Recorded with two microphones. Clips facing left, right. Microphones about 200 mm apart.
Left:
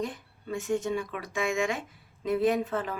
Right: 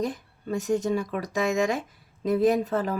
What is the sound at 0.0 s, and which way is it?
Speech, 40° right (ahead or behind).